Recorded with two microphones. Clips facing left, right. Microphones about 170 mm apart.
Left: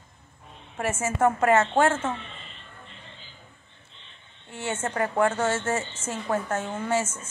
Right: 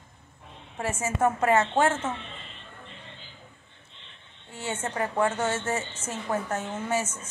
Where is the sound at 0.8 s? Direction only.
15° right (ahead or behind).